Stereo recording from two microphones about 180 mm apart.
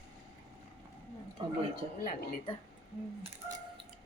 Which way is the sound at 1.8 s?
35° right (ahead or behind).